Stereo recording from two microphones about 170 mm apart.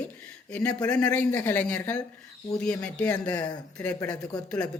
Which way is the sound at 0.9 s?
5° left (ahead or behind).